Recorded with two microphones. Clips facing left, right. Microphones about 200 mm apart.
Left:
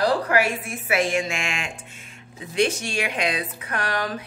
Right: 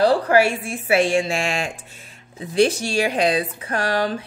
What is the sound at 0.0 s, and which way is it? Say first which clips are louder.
A woman's voice: right 5 dB; 30° right (ahead or behind).